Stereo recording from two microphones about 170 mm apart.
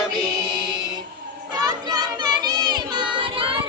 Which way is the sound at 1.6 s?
25° right (ahead or behind).